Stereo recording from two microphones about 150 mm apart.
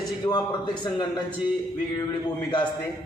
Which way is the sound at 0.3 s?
30° left (ahead or behind).